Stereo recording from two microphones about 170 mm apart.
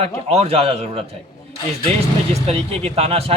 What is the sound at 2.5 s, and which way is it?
Speech, 35° right (ahead or behind).